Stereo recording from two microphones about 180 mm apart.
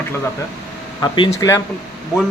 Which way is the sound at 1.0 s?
25° left (ahead or behind).